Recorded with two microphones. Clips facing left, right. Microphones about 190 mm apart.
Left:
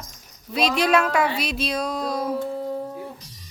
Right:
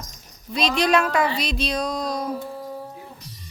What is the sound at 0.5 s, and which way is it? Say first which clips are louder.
Speech: even; 5° left (ahead or behind).